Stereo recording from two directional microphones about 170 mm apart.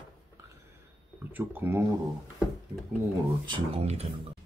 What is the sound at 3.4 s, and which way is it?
Speech, 30° right (ahead or behind).